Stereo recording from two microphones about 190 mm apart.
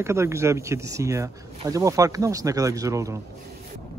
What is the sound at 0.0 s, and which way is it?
Speech, 15° right (ahead or behind).